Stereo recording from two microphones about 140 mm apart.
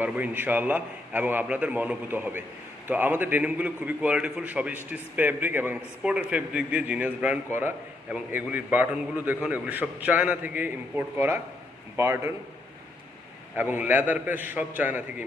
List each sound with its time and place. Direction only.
0.0 s a man's voice: 10° right (ahead or behind)
13.6 s a man's voice: 15° right (ahead or behind)